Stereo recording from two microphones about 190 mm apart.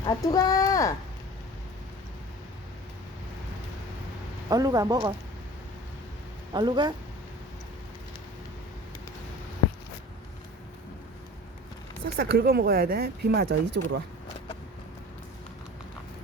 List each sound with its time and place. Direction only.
0.0 s speech: 20° left (ahead or behind)
4.4 s a man's voice: 20° right (ahead or behind)
6.5 s a man's voice: 25° right (ahead or behind)
12.0 s speech: 55° right (ahead or behind)